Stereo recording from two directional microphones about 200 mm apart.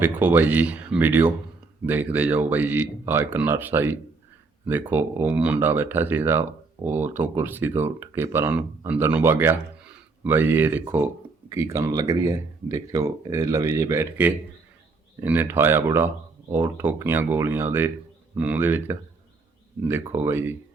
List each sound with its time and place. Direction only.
0.0 s speech: 10° right (ahead or behind)